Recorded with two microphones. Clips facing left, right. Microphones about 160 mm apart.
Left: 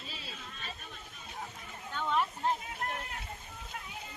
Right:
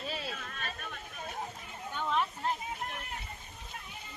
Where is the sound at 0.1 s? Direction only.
60° right (ahead or behind).